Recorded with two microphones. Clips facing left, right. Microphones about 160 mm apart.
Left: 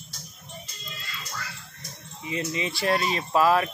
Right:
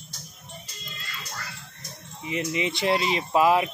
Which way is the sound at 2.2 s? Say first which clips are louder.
Right 2 dB; 20° right (ahead or behind).